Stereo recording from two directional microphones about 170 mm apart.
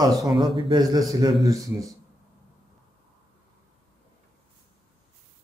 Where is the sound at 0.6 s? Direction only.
25° right (ahead or behind).